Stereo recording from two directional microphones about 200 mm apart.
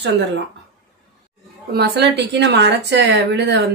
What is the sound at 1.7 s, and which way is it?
Speech, 55° right (ahead or behind).